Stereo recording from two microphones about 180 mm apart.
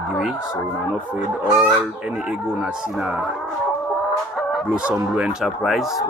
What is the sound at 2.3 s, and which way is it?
Speech, 5° right (ahead or behind).